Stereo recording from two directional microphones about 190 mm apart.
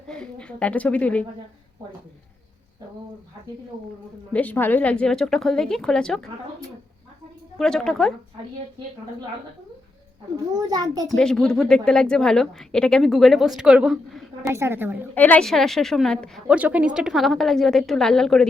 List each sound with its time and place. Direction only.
0.1 s a woman's voice: 5° left (ahead or behind)
4.3 s a woman's voice: 10° left (ahead or behind)
7.6 s a woman's voice: 5° left (ahead or behind)
10.3 s a child's voice: 20° right (ahead or behind)
11.1 s a woman's voice: 5° left (ahead or behind)
14.4 s a woman's voice: 15° right (ahead or behind)
15.1 s a woman's voice: 10° left (ahead or behind)